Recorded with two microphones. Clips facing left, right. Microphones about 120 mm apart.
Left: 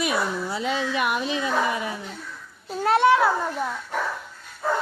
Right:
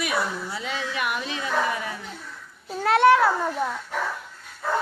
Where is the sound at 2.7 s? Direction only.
Centre (ahead or behind).